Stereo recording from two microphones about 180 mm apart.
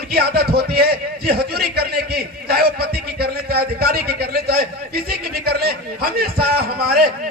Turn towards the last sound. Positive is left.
turn(degrees=-60)  # may be behind; listen again after turning